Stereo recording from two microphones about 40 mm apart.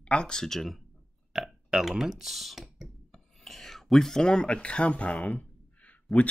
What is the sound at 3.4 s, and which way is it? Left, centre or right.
Speech, centre.